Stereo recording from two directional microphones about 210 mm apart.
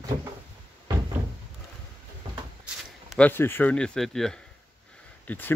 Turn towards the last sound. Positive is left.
turn(degrees=10)  # may be behind; listen again after turning